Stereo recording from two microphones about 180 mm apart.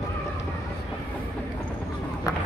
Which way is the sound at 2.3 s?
20° left (ahead or behind).